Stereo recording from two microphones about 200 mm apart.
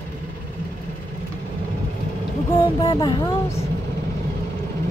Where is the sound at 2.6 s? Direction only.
20° left (ahead or behind).